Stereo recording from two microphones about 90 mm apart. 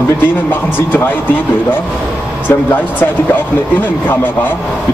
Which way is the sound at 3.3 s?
20° left (ahead or behind).